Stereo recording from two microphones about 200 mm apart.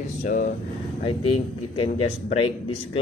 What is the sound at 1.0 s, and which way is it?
A man's voice, 25° left (ahead or behind).